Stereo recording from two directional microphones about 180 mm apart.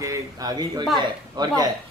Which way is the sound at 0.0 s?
20° right (ahead or behind).